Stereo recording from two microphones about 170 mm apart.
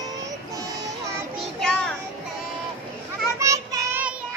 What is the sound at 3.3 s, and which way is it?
Child singing, 20° right (ahead or behind).